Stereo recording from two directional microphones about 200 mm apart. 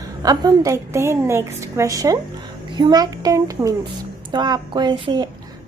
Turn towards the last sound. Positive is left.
turn(degrees=-20)  # may be behind; listen again after turning